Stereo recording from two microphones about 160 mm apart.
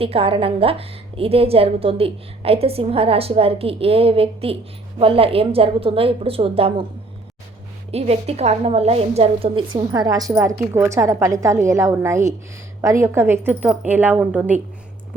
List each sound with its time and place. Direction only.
0.0 s a woman's voice: 35° right (ahead or behind)
7.9 s a woman's voice: 40° right (ahead or behind); by 14.5 s 10° right (ahead or behind)